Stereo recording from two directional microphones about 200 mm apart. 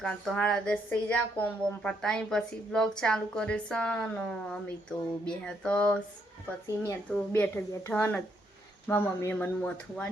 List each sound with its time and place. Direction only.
0.0 s a woman's voice: 5° left (ahead or behind)
7.1 s speech: 10° left (ahead or behind)